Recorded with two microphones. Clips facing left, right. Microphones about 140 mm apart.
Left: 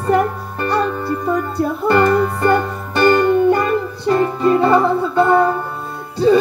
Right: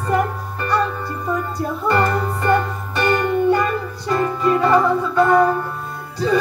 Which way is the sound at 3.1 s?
35° left (ahead or behind).